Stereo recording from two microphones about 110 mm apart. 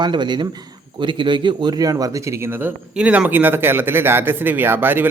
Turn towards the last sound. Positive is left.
turn(degrees=-20)  # may be behind; listen again after turning